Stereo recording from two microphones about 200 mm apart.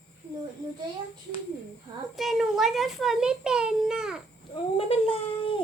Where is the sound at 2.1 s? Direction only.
Centre (ahead or behind).